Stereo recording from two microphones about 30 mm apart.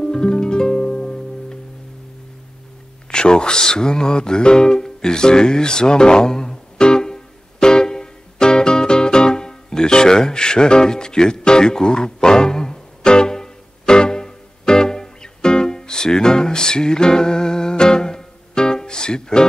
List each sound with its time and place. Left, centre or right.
0.0 s harp: left
3.1 s music: left